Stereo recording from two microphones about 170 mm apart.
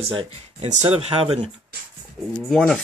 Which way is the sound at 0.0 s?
35° right (ahead or behind).